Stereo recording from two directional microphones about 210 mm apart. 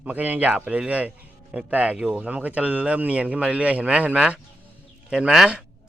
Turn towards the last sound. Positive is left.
turn(degrees=-5)  # may be behind; listen again after turning